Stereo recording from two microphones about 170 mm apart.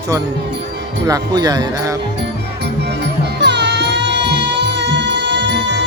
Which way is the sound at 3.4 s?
85° right.